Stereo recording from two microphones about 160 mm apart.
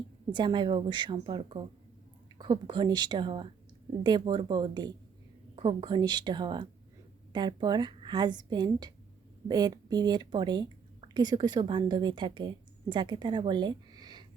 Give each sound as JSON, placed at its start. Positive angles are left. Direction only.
{"t": 0.3, "sound": "a woman's voice", "side_deg": -30}